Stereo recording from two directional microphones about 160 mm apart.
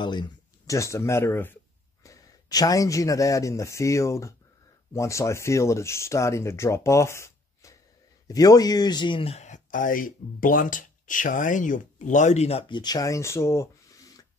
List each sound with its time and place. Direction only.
0.0 s speech: 30° left (ahead or behind)